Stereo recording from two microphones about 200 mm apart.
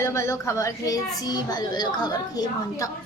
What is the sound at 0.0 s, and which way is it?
A child's voice, 15° left (ahead or behind).